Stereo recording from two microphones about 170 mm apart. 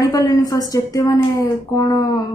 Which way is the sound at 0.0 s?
20° left (ahead or behind).